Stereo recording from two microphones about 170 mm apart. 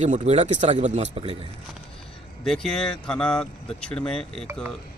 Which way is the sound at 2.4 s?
Centre (ahead or behind).